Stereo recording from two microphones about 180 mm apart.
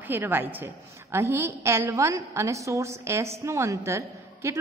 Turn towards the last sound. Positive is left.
turn(degrees=-15)  # may be behind; listen again after turning